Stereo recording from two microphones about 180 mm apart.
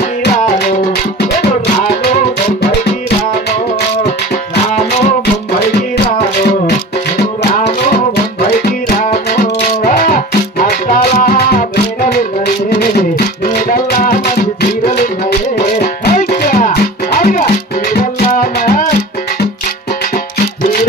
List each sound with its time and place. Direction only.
8.6 s music: 55° left (ahead or behind)
13.7 s music: 50° left (ahead or behind)